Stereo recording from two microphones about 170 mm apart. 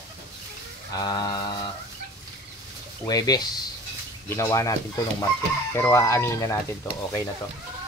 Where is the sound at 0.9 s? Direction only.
25° left (ahead or behind).